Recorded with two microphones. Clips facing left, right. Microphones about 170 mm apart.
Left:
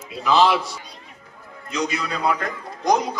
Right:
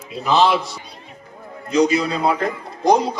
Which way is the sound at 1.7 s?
35° right (ahead or behind).